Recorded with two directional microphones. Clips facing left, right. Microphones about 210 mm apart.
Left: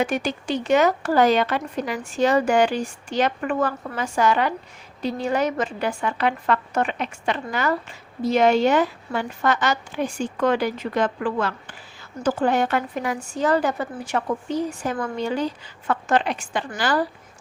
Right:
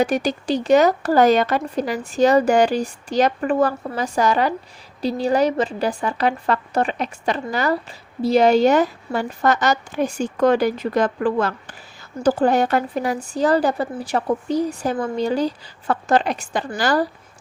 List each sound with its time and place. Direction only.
0.0 s a woman's voice: 35° right (ahead or behind)